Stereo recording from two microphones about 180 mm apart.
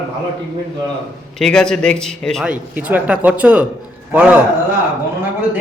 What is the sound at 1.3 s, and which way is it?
Speech, 5° left (ahead or behind).